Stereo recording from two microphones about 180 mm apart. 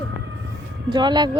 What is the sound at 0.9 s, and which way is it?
Speech, 25° right (ahead or behind).